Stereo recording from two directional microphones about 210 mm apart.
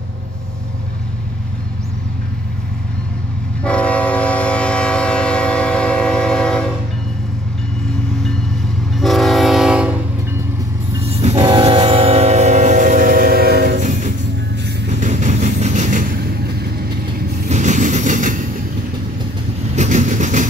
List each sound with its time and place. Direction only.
3.6 s train: 5° left (ahead or behind)
8.9 s train: centre (ahead or behind)
11.1 s train: 30° right (ahead or behind)
15.0 s vehicle: 35° right (ahead or behind)
17.5 s train: 35° right (ahead or behind)
19.7 s vehicle: 35° right (ahead or behind)